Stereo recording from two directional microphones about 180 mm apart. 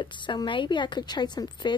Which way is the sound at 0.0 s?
25° left (ahead or behind).